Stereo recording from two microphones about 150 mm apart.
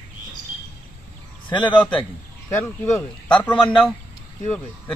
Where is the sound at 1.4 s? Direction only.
30° left (ahead or behind).